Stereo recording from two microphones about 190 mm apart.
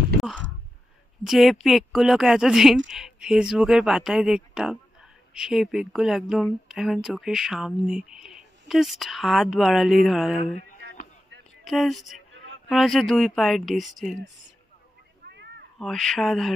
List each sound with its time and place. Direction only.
1.2 s speech: centre (ahead or behind)
11.6 s speech: centre (ahead or behind)
15.2 s cat: 60° right (ahead or behind)
15.8 s speech: centre (ahead or behind)